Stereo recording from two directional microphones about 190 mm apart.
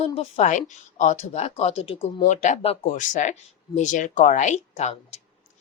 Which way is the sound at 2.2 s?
40° left (ahead or behind).